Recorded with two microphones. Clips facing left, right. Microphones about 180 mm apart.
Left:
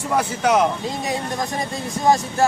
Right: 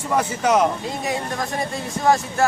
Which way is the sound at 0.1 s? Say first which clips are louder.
Even; 5° left (ahead or behind).